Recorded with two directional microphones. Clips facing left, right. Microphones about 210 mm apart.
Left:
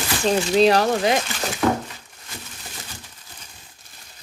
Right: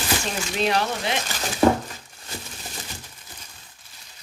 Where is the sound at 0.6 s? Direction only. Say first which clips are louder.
Left 6 dB; 40° left (ahead or behind).